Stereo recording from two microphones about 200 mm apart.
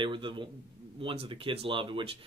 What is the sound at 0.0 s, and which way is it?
Speech, 25° right (ahead or behind).